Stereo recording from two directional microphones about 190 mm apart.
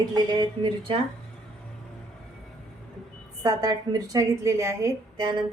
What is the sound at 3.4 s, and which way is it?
A woman's voice, 20° right (ahead or behind).